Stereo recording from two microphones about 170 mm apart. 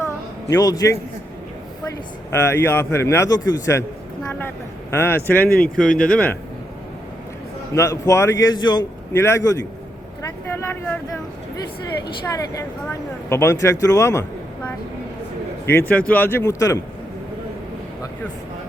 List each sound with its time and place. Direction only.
0.5 s speech: 20° left (ahead or behind)
5.5 s speech: 55° left (ahead or behind)
6.0 s speech: 5° left (ahead or behind)
7.7 s speech: 15° left (ahead or behind)
9.1 s speech: 15° left (ahead or behind)
10.2 s a sound: 15° left (ahead or behind)
12.5 s speech: 15° left (ahead or behind)